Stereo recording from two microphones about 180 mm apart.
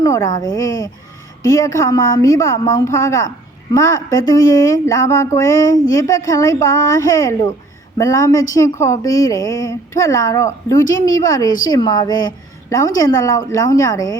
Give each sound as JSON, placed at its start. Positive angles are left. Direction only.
{"t": 0.0, "sound": "a woman's voice", "side_deg": 15}
{"t": 1.6, "sound": "a woman's voice", "side_deg": 20}